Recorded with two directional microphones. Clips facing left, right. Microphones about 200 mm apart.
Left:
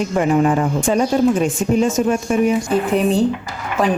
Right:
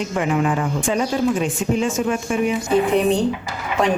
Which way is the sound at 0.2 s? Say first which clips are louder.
Left 5 dB; 40° left (ahead or behind).